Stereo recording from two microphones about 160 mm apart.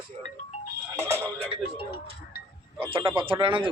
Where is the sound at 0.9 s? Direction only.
15° right (ahead or behind).